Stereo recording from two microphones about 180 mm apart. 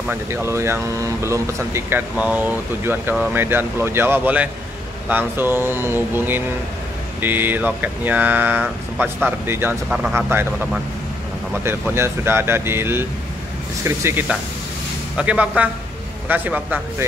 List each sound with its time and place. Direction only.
0.1 s speech: 15° right (ahead or behind)